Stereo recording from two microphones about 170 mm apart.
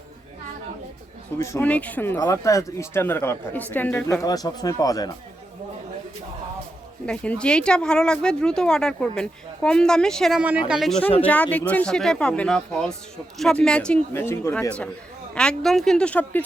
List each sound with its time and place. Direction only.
1.4 s speech: 15° left (ahead or behind)
7.0 s speech: 5° left (ahead or behind)
11.2 s speech: 10° left (ahead or behind)